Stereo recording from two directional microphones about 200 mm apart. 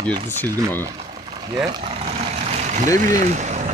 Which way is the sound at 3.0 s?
40° right (ahead or behind).